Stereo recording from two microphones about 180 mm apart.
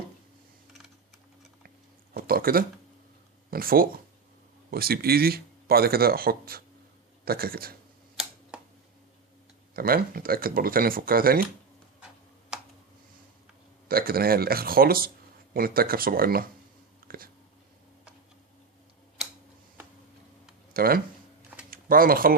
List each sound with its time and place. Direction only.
2.1 s speech: 55° right (ahead or behind)
8.2 s a sound: 5° right (ahead or behind)
9.7 s speech: 55° right (ahead or behind)
11.9 s tick-tock: 5° right (ahead or behind)
13.8 s speech: 55° right (ahead or behind)
17.1 s a sound: 55° right (ahead or behind)
20.7 s speech: 55° right (ahead or behind)